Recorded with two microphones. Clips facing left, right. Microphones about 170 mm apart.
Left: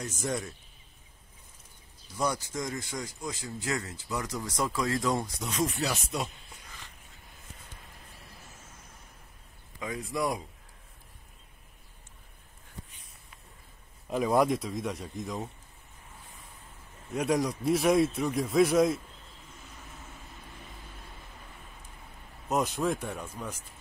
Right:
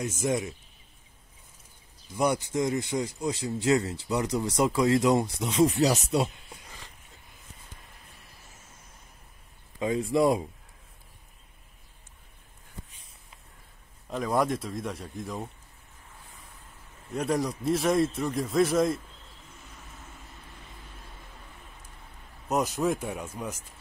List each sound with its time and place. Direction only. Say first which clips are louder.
0.2 s speech: right 5 dB; 20° right (ahead or behind)
2.2 s speech: right 6 dB; 25° right (ahead or behind)
9.8 s speech: right 8 dB; 30° right (ahead or behind)
14.0 s a man's voice: left 2 dB; 5° left (ahead or behind)
17.1 s a man's voice: even; centre (ahead or behind)
22.5 s speech: right 2 dB; 5° right (ahead or behind)